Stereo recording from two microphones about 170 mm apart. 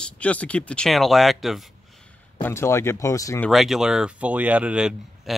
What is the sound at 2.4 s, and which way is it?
Speech, 15° left (ahead or behind).